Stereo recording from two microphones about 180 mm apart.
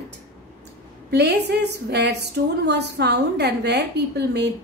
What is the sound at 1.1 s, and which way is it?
A woman's voice, 65° right (ahead or behind).